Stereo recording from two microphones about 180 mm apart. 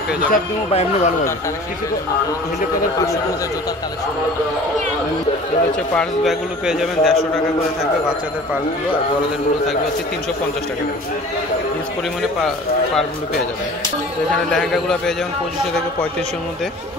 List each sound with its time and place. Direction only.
0.3 s speech: 45° left (ahead or behind)
5.9 s a man's voice: centre (ahead or behind)
14.5 s a man's voice: 5° left (ahead or behind)